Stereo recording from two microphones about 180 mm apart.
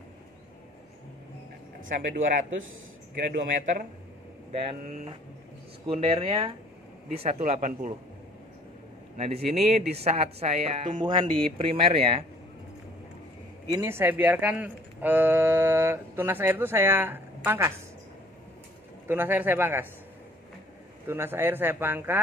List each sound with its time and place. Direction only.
1.9 s speech: 50° right (ahead or behind)
4.5 s speech: 35° right (ahead or behind)
9.1 s speech: 35° right (ahead or behind)
13.7 s speech: 15° right (ahead or behind)
19.0 s speech: 10° right (ahead or behind)
21.1 s speech: 15° right (ahead or behind)